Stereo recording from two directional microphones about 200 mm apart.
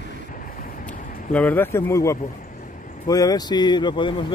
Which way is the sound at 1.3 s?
10° left (ahead or behind).